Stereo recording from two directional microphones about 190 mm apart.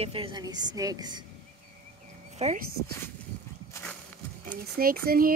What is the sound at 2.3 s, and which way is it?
Speech, 35° right (ahead or behind).